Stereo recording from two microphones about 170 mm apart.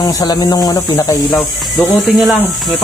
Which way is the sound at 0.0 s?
25° left (ahead or behind).